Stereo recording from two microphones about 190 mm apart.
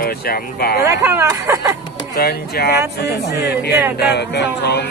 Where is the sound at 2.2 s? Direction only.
55° left (ahead or behind).